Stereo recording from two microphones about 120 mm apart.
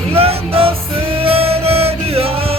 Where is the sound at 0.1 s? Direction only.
55° right (ahead or behind).